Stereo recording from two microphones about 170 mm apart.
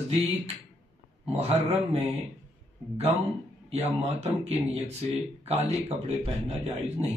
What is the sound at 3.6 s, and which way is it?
Speech, 40° right (ahead or behind).